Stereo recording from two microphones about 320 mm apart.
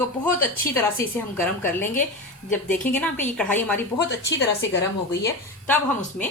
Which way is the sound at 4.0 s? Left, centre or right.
Left.